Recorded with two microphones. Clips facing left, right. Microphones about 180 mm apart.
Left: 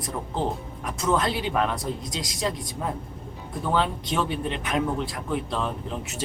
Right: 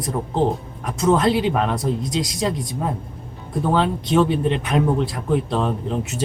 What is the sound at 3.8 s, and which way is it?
Speech, 25° right (ahead or behind).